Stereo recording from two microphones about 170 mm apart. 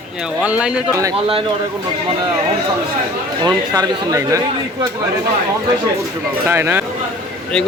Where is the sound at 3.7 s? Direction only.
20° right (ahead or behind).